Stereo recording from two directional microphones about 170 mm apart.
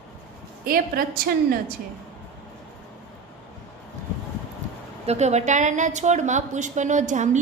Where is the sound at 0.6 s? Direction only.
60° right (ahead or behind).